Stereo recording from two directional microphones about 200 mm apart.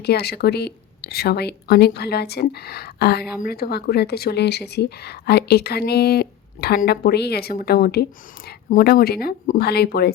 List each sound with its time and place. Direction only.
0.0 s a woman's voice: 55° left (ahead or behind)